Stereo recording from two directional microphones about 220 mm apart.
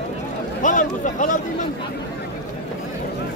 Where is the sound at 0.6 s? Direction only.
35° left (ahead or behind).